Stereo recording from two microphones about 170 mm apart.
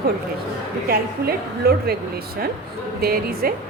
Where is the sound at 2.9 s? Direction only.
65° right (ahead or behind).